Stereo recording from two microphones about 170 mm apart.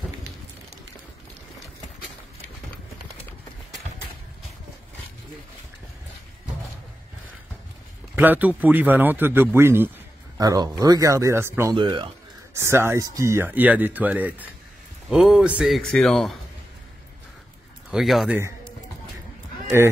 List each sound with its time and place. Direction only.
8.2 s speech: 10° right (ahead or behind)
11.7 s speech: 30° right (ahead or behind)
12.5 s speech: 15° right (ahead or behind); by 16.3 s centre (ahead or behind)
17.9 s speech: centre (ahead or behind)